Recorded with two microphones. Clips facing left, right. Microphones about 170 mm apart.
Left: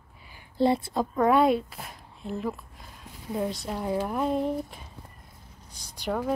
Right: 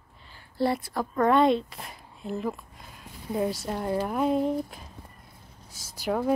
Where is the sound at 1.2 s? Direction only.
5° left (ahead or behind).